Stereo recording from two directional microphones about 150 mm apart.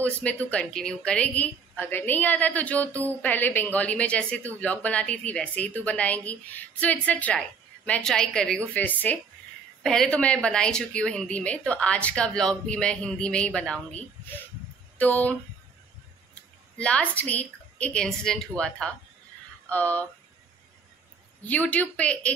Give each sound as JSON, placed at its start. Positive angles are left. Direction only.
{"t": 0.2, "sound": "a woman's voice", "side_deg": 10}
{"t": 16.7, "sound": "a woman's voice", "side_deg": 5}
{"t": 21.4, "sound": "a woman's voice", "side_deg": 10}